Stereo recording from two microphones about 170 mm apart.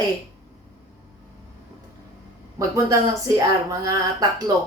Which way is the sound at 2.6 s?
20° right (ahead or behind).